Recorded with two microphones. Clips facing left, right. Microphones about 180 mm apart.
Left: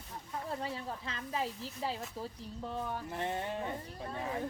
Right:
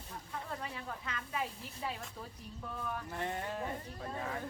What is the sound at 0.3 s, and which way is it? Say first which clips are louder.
Speech: left 5 dB; 30° left (ahead or behind).